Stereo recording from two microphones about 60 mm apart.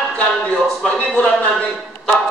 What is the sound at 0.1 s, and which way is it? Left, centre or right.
A man's voice, centre.